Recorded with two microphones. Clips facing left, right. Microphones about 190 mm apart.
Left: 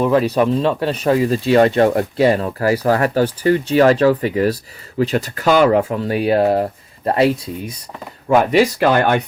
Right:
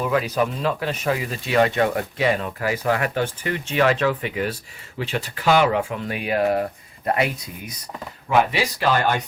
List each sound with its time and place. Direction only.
0.0 s speech: 30° left (ahead or behind)
8.3 s speech: 50° left (ahead or behind)